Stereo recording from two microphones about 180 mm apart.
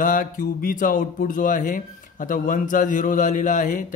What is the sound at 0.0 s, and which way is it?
Speech, 50° left (ahead or behind).